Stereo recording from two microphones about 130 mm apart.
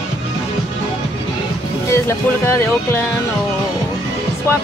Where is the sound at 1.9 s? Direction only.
20° left (ahead or behind).